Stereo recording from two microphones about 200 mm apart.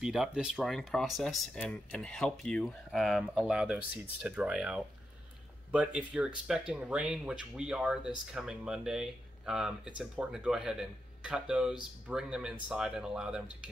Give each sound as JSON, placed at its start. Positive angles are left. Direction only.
{"t": 0.0, "sound": "speech", "side_deg": -5}